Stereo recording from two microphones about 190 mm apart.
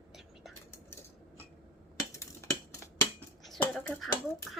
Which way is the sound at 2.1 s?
15° left (ahead or behind).